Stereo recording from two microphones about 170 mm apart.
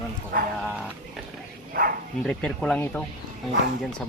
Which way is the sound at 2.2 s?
5° left (ahead or behind).